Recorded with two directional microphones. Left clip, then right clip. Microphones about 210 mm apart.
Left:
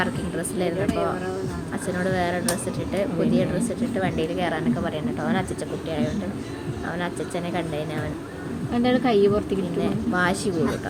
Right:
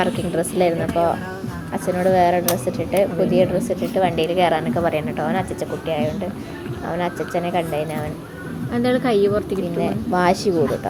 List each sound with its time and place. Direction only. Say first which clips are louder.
0.0 s a woman's voice: right 6 dB; 25° right (ahead or behind)
5.2 s speech: right 4 dB; 10° right (ahead or behind)
10.2 s speech: right 6 dB; 20° right (ahead or behind)